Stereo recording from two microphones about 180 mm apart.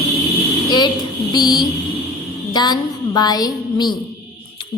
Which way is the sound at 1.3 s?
20° left (ahead or behind).